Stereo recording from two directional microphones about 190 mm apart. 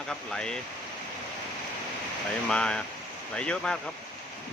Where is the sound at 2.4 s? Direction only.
5° left (ahead or behind).